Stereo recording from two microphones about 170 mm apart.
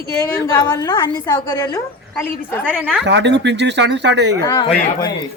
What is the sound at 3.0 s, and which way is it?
Speech, 90° right.